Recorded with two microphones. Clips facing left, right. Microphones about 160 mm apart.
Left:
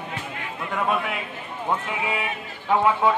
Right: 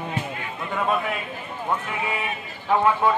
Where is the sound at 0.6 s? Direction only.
5° left (ahead or behind).